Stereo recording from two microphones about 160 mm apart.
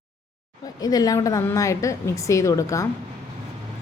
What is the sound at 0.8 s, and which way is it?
A woman's voice, 25° left (ahead or behind).